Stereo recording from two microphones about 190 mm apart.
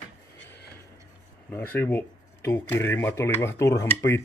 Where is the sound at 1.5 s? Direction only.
10° left (ahead or behind).